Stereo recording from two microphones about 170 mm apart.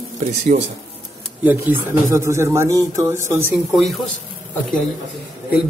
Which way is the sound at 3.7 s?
Centre (ahead or behind).